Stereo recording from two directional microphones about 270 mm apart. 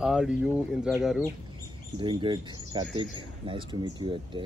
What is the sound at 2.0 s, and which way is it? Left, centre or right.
Speech, centre.